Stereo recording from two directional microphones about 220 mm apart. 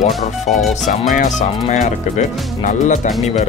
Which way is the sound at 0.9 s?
35° left (ahead or behind).